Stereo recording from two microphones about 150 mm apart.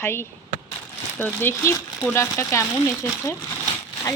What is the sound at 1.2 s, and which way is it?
Speech, 15° left (ahead or behind).